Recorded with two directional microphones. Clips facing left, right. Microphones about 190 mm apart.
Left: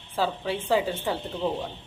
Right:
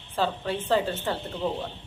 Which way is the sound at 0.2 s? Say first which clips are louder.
Even; 10° left (ahead or behind).